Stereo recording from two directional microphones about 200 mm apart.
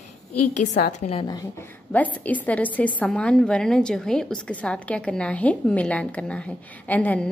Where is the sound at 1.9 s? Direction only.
10° left (ahead or behind).